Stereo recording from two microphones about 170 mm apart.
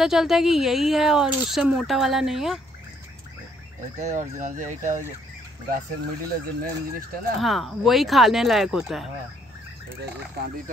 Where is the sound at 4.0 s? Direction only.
45° right (ahead or behind).